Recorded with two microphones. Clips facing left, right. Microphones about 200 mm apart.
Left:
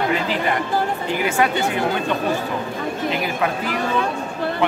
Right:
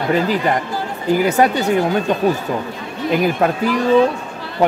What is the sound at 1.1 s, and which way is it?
Speech, 40° right (ahead or behind).